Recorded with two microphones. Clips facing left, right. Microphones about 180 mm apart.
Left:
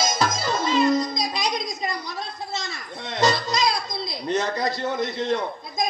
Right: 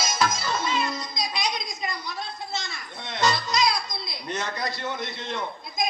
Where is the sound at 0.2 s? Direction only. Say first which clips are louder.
Left 2 dB; 35° left (ahead or behind).